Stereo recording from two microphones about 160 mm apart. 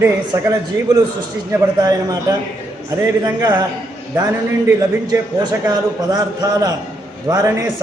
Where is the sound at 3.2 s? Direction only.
25° right (ahead or behind).